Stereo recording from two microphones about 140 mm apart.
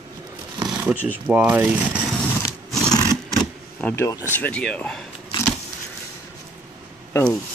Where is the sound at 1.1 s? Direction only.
10° right (ahead or behind).